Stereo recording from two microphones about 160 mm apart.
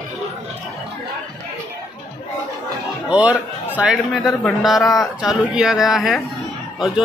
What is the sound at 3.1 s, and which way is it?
A man's voice, 10° right (ahead or behind).